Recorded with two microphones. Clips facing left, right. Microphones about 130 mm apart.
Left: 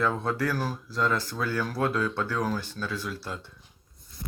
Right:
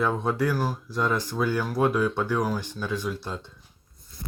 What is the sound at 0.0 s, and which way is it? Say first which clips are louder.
Speech: right 2 dB; 15° right (ahead or behind).